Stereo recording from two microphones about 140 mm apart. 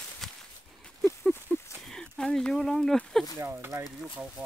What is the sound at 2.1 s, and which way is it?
Speech, 5° left (ahead or behind).